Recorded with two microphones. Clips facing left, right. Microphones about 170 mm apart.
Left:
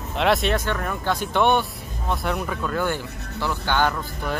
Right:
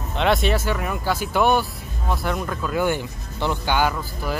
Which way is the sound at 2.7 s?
15° right (ahead or behind).